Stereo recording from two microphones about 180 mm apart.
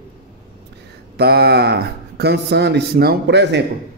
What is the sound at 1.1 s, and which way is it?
Speech, 60° right (ahead or behind).